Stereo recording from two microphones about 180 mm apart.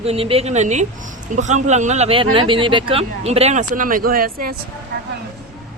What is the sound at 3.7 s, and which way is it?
Speech, 50° right (ahead or behind).